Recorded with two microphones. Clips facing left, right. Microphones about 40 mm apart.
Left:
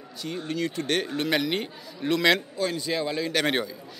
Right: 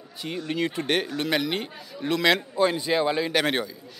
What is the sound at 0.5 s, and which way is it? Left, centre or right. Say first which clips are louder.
Speech: right 2 dB; right.